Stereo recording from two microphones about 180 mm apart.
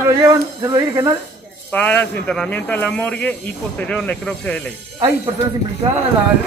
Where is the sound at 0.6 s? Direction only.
20° right (ahead or behind).